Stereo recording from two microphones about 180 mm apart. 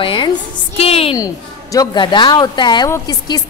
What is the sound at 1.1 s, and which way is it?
A woman's voice, 20° left (ahead or behind).